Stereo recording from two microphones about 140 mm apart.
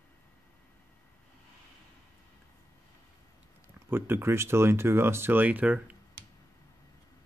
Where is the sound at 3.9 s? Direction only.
15° right (ahead or behind).